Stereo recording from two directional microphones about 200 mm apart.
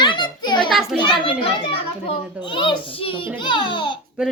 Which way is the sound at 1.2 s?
25° left (ahead or behind).